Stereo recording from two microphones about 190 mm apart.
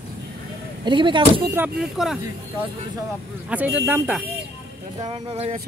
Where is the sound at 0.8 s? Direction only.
25° right (ahead or behind).